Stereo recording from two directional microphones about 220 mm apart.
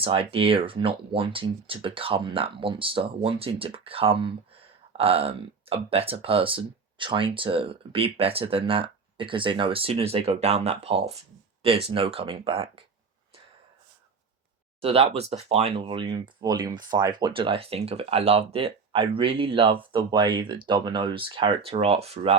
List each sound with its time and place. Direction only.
0.0 s speech: 25° right (ahead or behind)
14.8 s speech: 25° right (ahead or behind)